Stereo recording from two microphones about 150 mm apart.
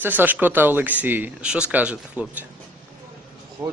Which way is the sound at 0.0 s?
10° right (ahead or behind).